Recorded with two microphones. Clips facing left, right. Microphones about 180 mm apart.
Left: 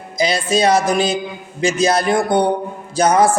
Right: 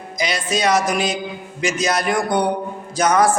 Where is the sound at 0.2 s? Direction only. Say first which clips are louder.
Left 5 dB; 30° left (ahead or behind).